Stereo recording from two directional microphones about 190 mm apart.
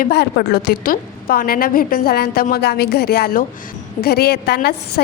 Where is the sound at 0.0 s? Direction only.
60° left (ahead or behind).